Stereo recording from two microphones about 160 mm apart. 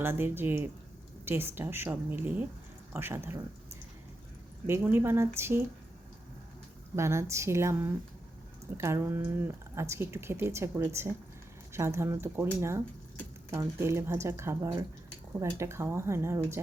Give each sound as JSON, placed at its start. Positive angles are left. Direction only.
{"t": 0.0, "sound": "speech", "side_deg": -15}
{"t": 6.9, "sound": "speech", "side_deg": -15}